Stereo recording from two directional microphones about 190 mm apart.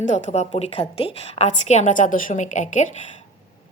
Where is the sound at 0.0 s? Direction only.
40° left (ahead or behind).